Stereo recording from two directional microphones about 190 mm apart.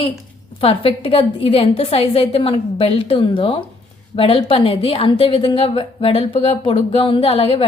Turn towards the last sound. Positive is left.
turn(degrees=30)  # may be behind; listen again after turning